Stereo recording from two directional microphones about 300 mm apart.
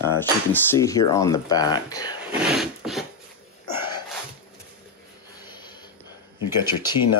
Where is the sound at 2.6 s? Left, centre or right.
Centre.